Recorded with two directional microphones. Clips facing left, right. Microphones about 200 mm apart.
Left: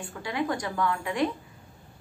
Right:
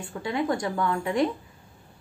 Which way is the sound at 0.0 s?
25° right (ahead or behind).